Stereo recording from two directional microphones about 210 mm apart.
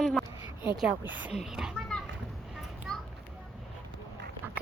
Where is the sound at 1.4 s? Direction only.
5° right (ahead or behind).